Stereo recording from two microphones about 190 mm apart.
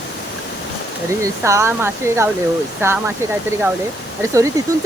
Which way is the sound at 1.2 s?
15° right (ahead or behind).